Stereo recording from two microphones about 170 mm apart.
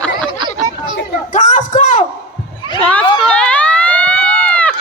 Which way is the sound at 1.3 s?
45° left (ahead or behind).